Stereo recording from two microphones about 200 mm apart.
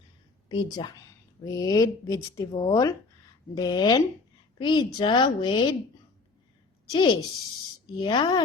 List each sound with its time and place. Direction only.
0.4 s a woman's voice: 20° left (ahead or behind)
6.9 s a woman's voice: 20° left (ahead or behind)